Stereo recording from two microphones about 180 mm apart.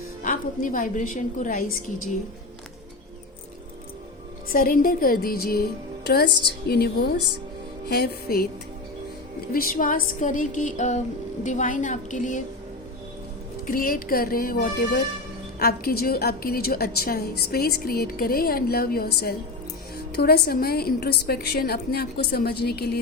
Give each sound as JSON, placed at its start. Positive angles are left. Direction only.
{"t": 0.2, "sound": "a woman's voice", "side_deg": 45}
{"t": 4.4, "sound": "a woman's voice", "side_deg": 50}
{"t": 6.1, "sound": "a woman's voice", "side_deg": 65}
{"t": 9.5, "sound": "a woman's voice", "side_deg": 50}
{"t": 13.7, "sound": "a woman's voice", "side_deg": 50}